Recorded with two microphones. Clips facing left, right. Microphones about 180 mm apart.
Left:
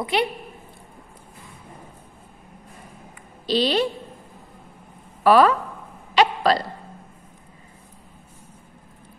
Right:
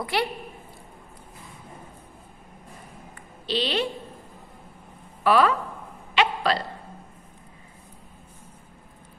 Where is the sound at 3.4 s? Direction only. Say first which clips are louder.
Left 5 dB; 40° left (ahead or behind).